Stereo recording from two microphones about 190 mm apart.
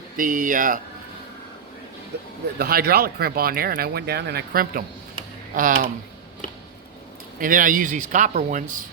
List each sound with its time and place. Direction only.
0.2 s speech: 45° right (ahead or behind)
2.1 s speech: 60° right (ahead or behind); by 5.9 s 45° right (ahead or behind)
7.3 s speech: 45° right (ahead or behind)